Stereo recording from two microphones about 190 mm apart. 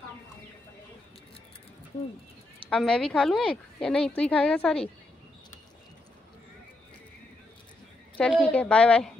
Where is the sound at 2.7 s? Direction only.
5° left (ahead or behind).